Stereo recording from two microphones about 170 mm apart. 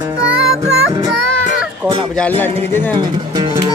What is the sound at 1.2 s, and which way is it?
Music, 5° left (ahead or behind).